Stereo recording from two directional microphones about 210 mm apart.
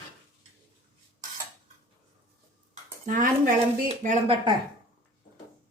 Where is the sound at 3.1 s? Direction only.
40° right (ahead or behind).